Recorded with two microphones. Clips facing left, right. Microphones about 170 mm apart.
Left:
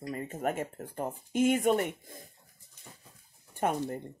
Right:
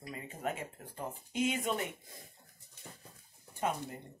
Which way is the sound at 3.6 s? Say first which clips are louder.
Left 6 dB; 55° left (ahead or behind).